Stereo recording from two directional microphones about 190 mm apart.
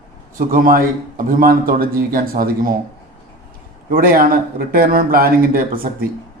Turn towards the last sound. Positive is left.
turn(degrees=-50)  # may be behind; listen again after turning